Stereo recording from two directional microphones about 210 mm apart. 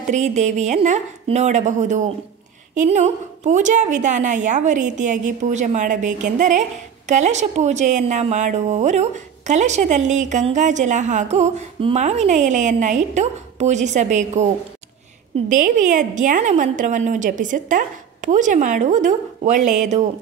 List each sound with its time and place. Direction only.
0.0 s a woman's voice: 35° right (ahead or behind)